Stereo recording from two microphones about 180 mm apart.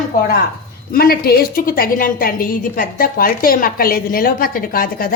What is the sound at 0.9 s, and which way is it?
A woman's voice, 55° left (ahead or behind).